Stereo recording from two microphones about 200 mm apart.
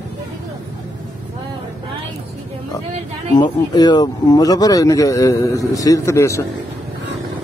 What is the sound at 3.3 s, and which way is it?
Speech, 20° left (ahead or behind).